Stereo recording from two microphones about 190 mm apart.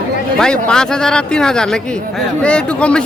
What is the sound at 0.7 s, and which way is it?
Speech, 5° left (ahead or behind).